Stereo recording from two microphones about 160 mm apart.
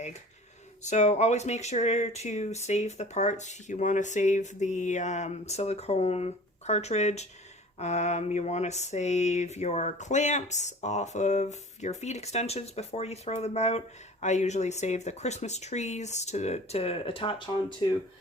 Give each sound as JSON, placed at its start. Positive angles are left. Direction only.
{"t": 0.9, "sound": "speech", "side_deg": 45}